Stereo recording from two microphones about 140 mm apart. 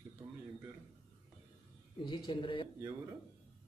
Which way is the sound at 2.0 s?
35° left (ahead or behind).